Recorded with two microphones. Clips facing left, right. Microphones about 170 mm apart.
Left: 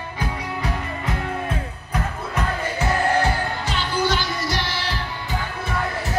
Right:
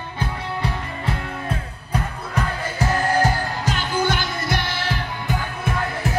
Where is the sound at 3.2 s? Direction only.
45° right (ahead or behind).